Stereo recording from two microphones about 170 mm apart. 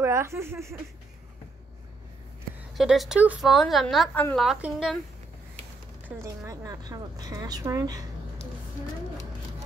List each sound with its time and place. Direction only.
0.0 s speech: 15° right (ahead or behind)
2.7 s speech: centre (ahead or behind)
6.0 s speech: 15° right (ahead or behind)